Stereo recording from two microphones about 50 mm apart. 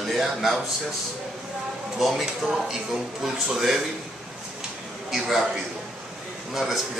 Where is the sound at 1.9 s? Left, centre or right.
Centre.